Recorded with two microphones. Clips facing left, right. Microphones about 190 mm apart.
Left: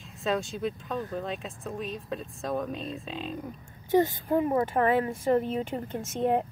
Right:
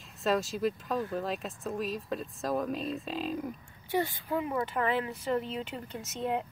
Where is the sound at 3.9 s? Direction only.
45° left (ahead or behind).